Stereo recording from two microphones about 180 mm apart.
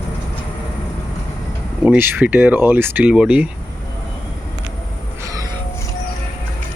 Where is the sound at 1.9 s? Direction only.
10° right (ahead or behind).